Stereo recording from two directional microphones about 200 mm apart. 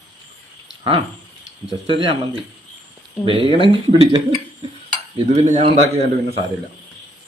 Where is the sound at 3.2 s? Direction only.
25° right (ahead or behind).